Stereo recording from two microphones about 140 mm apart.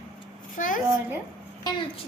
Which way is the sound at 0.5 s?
70° left (ahead or behind).